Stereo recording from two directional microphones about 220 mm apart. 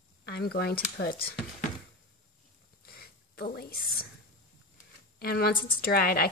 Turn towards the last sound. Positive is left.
turn(degrees=45)  # may be behind; listen again after turning